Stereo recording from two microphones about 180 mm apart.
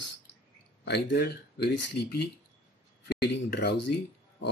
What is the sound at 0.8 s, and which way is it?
Speech, 70° left (ahead or behind).